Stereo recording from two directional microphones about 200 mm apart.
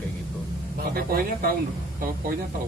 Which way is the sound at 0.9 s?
50° right (ahead or behind).